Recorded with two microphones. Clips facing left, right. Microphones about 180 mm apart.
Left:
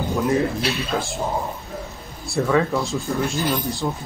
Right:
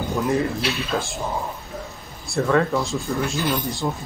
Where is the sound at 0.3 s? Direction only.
Centre (ahead or behind).